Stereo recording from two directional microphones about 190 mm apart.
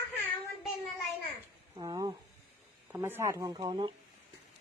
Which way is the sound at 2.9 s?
10° right (ahead or behind).